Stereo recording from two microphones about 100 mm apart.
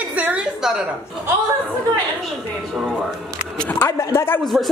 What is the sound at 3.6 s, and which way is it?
Speech, 15° left (ahead or behind).